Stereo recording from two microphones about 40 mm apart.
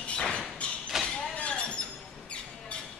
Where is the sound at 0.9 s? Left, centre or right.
Centre.